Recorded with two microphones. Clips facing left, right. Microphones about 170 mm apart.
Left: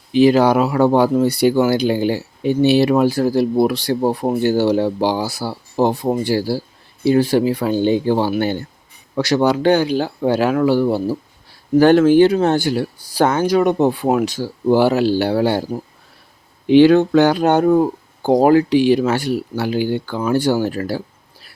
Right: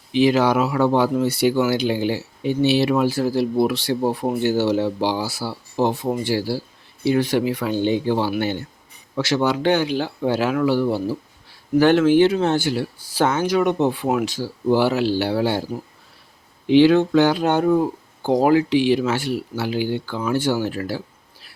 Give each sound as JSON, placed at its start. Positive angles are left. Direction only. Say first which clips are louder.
{"t": 0.1, "sound": "speech", "louder": "left 4 dB", "side_deg": 40}